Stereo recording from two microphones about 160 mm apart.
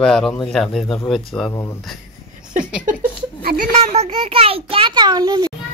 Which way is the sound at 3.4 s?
65° right (ahead or behind).